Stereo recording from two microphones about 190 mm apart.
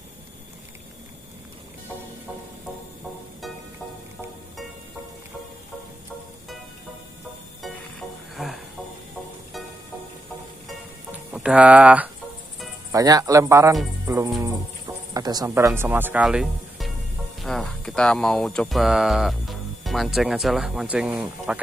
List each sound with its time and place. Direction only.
8.4 s music: centre (ahead or behind)
11.1 s music: 5° right (ahead or behind)
12.9 s speech: 20° right (ahead or behind); by 16.9 s centre (ahead or behind)
17.4 s music: centre (ahead or behind)